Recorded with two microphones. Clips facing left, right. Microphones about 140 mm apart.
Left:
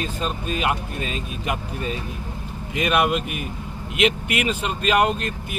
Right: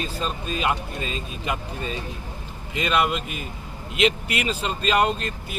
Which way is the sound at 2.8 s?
20° left (ahead or behind).